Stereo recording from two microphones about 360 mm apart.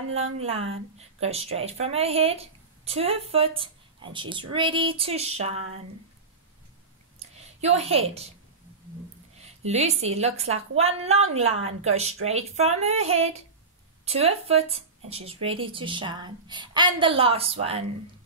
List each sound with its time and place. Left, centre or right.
0.4 s speech: centre
7.2 s a sound: centre
9.4 s a woman's voice: centre